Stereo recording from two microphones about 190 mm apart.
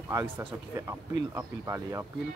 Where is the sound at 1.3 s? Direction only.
15° right (ahead or behind).